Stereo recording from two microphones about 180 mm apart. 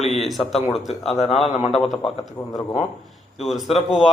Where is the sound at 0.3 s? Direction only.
Centre (ahead or behind).